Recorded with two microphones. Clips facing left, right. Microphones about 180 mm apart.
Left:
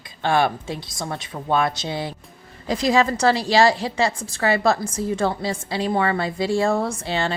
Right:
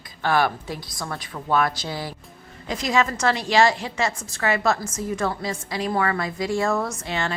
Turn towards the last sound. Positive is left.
turn(degrees=30)  # may be behind; listen again after turning